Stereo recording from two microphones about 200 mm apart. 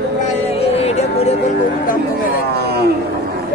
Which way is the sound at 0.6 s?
30° left (ahead or behind).